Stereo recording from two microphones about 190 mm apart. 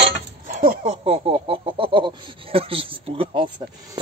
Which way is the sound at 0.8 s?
30° right (ahead or behind).